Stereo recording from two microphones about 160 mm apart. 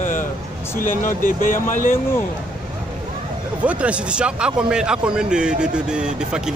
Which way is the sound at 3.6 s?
5° right (ahead or behind).